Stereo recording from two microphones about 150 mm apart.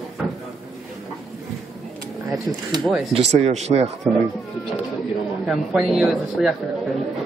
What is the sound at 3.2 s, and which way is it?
Speech, 45° right (ahead or behind).